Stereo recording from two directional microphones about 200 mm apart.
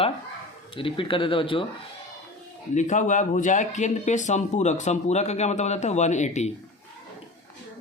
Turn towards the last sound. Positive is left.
turn(degrees=35)  # may be behind; listen again after turning